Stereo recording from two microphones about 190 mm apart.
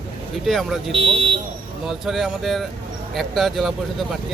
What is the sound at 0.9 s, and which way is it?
Speech, 30° right (ahead or behind).